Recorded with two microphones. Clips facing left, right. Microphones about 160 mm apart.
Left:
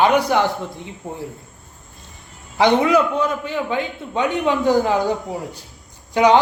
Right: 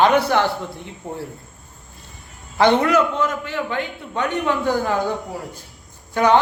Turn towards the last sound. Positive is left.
turn(degrees=15)  # may be behind; listen again after turning